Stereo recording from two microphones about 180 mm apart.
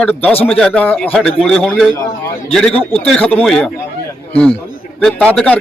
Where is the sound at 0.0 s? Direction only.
10° left (ahead or behind).